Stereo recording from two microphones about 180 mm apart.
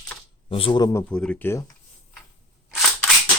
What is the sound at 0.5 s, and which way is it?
Speech, 30° left (ahead or behind).